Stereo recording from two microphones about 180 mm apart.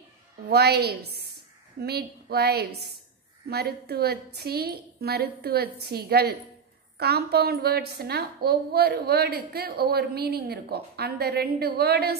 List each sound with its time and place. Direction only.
0.5 s a woman's voice: 60° right (ahead or behind)